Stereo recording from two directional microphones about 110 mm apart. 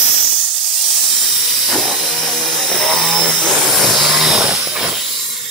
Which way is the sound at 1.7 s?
Centre (ahead or behind).